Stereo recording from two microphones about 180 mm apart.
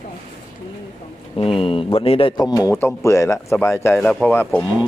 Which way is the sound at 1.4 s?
30° left (ahead or behind).